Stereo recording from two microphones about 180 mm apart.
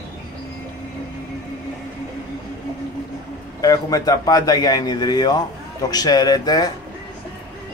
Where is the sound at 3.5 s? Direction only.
20° left (ahead or behind).